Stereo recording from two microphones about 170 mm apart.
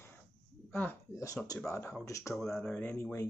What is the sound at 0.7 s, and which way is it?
Speech, 15° left (ahead or behind).